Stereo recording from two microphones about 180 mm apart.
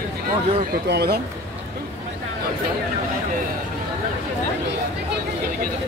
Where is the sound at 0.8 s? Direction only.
65° right (ahead or behind).